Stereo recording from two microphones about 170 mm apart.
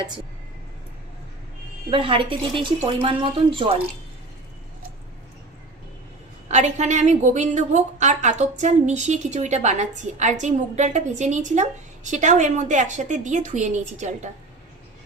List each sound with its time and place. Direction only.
1.9 s speech: 30° right (ahead or behind)
6.5 s a woman's voice: 40° right (ahead or behind)